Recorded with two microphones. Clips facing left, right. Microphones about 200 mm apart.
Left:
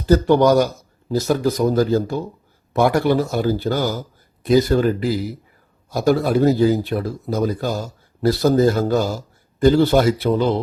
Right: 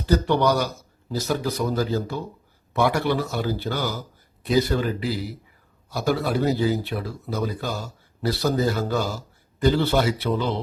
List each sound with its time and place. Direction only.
0.1 s speech: 45° left (ahead or behind)